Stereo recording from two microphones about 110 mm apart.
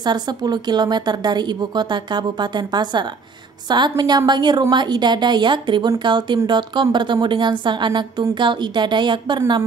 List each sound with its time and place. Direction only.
0.0 s a woman's voice: 40° right (ahead or behind)